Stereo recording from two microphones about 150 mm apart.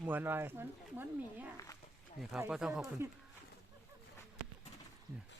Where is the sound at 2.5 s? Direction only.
5° right (ahead or behind).